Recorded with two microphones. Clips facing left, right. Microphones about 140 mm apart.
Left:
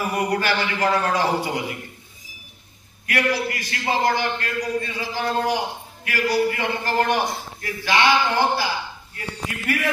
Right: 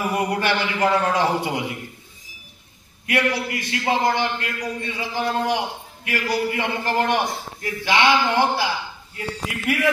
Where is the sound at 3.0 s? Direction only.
25° right (ahead or behind).